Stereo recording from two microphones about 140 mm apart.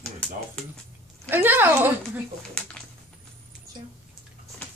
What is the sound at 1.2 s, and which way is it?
Speech, 15° right (ahead or behind).